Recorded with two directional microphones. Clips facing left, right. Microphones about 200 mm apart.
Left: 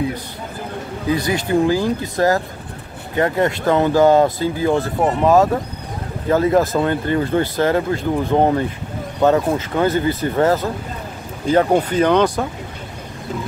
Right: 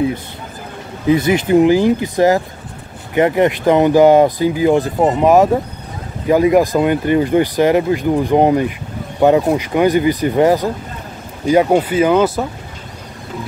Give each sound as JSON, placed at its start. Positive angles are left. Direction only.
{"t": 1.0, "sound": "speech", "side_deg": -20}